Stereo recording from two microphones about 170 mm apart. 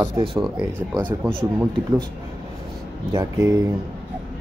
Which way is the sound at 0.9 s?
20° right (ahead or behind).